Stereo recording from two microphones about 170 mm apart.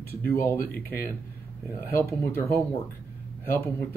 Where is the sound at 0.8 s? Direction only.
10° left (ahead or behind).